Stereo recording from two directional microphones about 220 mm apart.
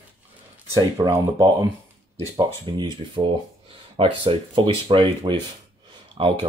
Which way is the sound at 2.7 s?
20° right (ahead or behind).